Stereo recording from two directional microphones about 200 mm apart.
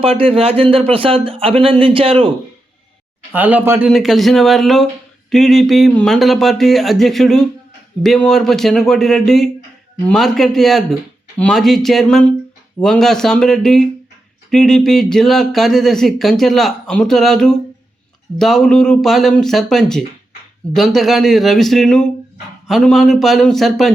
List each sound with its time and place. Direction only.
0.0 s speech: 30° right (ahead or behind)
3.3 s speech: 10° right (ahead or behind)